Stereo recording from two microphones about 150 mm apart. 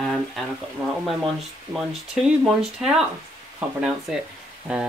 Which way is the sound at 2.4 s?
5° right (ahead or behind).